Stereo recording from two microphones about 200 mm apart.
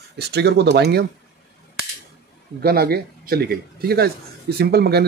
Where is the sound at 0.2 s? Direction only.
55° right (ahead or behind).